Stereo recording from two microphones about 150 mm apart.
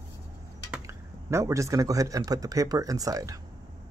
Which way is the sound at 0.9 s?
20° right (ahead or behind).